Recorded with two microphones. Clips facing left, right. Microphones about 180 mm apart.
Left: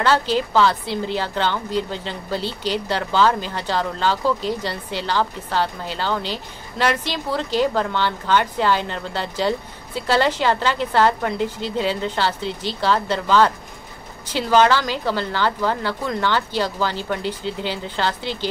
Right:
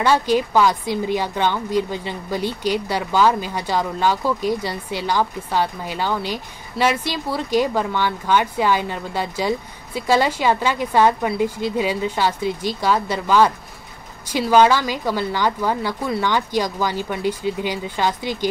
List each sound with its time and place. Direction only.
0.0 s speech: 10° right (ahead or behind)